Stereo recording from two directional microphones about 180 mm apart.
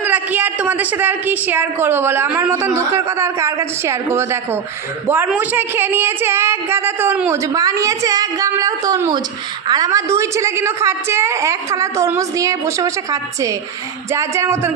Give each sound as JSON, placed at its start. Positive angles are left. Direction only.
{"t": 0.0, "sound": "a woman's voice", "side_deg": -10}